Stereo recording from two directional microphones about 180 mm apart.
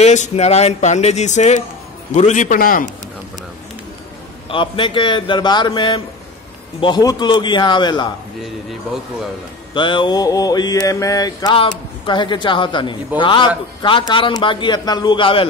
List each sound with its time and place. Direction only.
0.0 s a man's voice: 40° left (ahead or behind)
4.5 s mantra: 30° left (ahead or behind)
9.8 s mantra: 25° left (ahead or behind)